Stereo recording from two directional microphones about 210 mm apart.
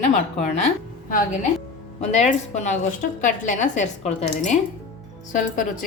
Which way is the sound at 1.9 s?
30° left (ahead or behind).